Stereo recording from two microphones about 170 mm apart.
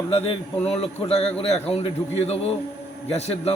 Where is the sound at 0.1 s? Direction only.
35° left (ahead or behind).